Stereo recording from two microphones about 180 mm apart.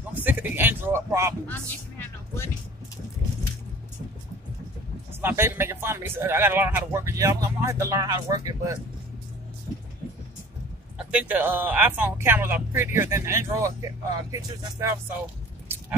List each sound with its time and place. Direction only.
0.1 s a sound: 10° right (ahead or behind)
1.5 s music: 10° left (ahead or behind)
5.2 s speech: 15° right (ahead or behind)
11.0 s speech: 5° right (ahead or behind)